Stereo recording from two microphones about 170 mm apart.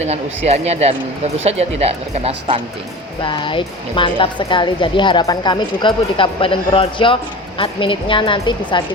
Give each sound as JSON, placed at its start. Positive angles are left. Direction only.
{"t": 0.0, "sound": "speech", "side_deg": -40}
{"t": 3.2, "sound": "speech", "side_deg": 30}